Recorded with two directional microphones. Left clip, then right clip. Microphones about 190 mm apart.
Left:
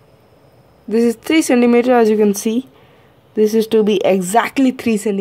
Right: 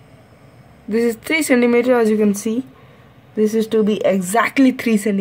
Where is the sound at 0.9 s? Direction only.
35° left (ahead or behind).